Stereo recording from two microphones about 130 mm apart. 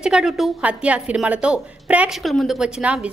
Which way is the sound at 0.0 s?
5° right (ahead or behind).